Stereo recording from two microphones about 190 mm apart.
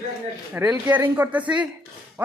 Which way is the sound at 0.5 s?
10° right (ahead or behind).